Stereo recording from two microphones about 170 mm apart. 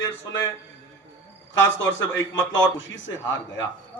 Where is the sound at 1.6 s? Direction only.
90° left.